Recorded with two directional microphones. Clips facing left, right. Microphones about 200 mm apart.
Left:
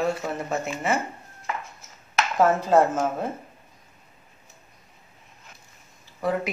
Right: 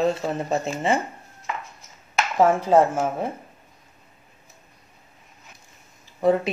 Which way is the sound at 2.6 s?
15° right (ahead or behind).